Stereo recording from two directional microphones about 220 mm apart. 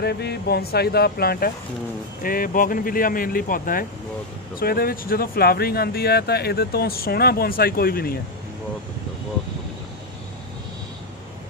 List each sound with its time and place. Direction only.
0.0 s speech: 45° left (ahead or behind)